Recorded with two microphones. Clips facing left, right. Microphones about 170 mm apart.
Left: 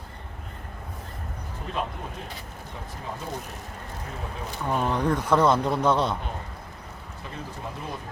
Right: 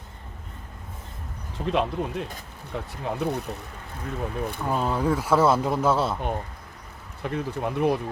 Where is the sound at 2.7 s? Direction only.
65° right (ahead or behind).